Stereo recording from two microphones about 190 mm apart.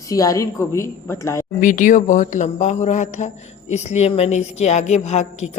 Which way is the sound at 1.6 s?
45° left (ahead or behind).